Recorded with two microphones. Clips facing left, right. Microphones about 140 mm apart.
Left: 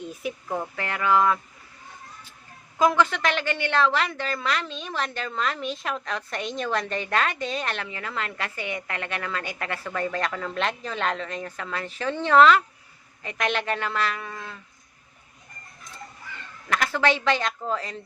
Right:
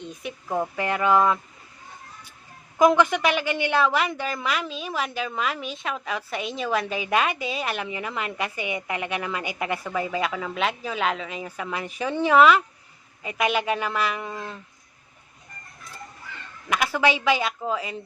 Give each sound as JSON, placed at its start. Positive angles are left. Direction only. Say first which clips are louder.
{"t": 0.0, "sound": "speech", "louder": "left 3 dB", "side_deg": 5}
{"t": 0.5, "sound": "a woman's voice", "louder": "right 7 dB", "side_deg": -15}
{"t": 2.7, "sound": "a woman's voice", "louder": "right 3 dB", "side_deg": -15}
{"t": 16.6, "sound": "a woman's voice", "louder": "right 1 dB", "side_deg": -10}